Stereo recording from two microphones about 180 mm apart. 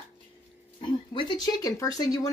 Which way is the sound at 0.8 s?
25° left (ahead or behind).